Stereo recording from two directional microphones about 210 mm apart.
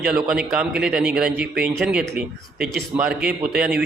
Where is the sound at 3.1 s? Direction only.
5° right (ahead or behind).